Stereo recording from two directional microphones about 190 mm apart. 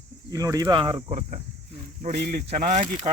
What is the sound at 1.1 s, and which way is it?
Speech, 40° right (ahead or behind).